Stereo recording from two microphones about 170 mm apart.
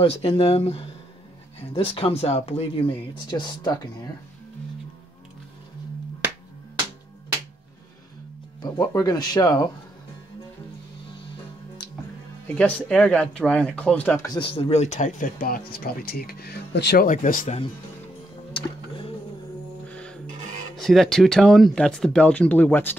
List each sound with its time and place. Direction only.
0.0 s speech: 35° left (ahead or behind)
3.3 s speech: 25° left (ahead or behind)
6.2 s finger snapping: 10° right (ahead or behind)
8.7 s speech: 20° left (ahead or behind)
12.5 s speech: 5° left (ahead or behind)
14.2 s speech: 25° left (ahead or behind); by 17.0 s 75° left (ahead or behind)
17.0 s speech: 50° left (ahead or behind)
18.5 s music: 30° left (ahead or behind)
19.9 s music: 5° left (ahead or behind)
20.7 s speech: centre (ahead or behind)